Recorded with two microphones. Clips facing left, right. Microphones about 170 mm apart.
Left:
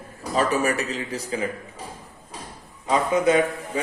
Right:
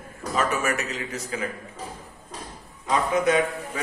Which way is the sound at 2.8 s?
30° left (ahead or behind).